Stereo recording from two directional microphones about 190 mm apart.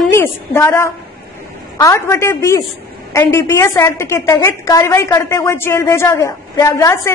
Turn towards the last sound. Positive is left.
turn(degrees=15)  # may be behind; listen again after turning